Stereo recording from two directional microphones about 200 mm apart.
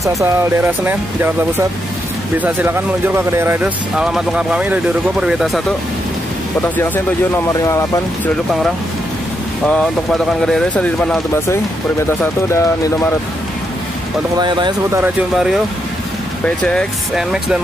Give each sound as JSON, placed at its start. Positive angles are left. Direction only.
{"t": 0.0, "sound": "speech", "side_deg": -10}
{"t": 7.4, "sound": "speech", "side_deg": 15}
{"t": 9.7, "sound": "speech", "side_deg": 5}
{"t": 14.4, "sound": "speech", "side_deg": -20}
{"t": 16.4, "sound": "speech", "side_deg": 5}